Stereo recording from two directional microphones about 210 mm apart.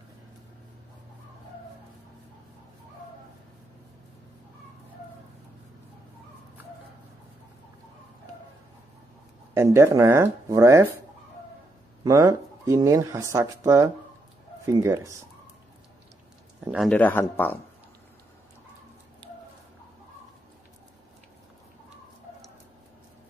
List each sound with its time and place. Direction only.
9.5 s speech: 15° right (ahead or behind)
12.0 s speech: 20° right (ahead or behind)
16.6 s speech: 5° right (ahead or behind)
16.9 s speech: 10° left (ahead or behind)